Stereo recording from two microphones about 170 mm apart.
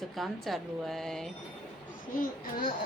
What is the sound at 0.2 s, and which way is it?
A woman's voice, centre (ahead or behind).